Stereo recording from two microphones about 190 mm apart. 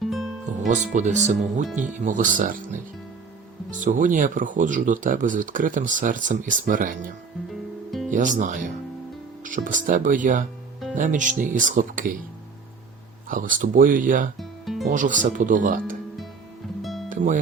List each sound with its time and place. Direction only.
0.0 s music: centre (ahead or behind)
0.7 s speech: 40° right (ahead or behind)
8.1 s speech: 40° right (ahead or behind)
13.2 s speech: 45° right (ahead or behind)
14.3 s music: centre (ahead or behind)
14.8 s speech: 45° right (ahead or behind)
16.8 s music: centre (ahead or behind)
17.1 s music: 40° right (ahead or behind)